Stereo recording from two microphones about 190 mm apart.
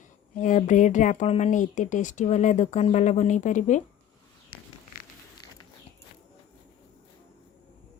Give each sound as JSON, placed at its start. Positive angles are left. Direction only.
{"t": 0.3, "sound": "speech", "side_deg": 40}